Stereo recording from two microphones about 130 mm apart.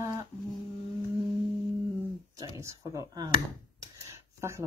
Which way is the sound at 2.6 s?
25° right (ahead or behind).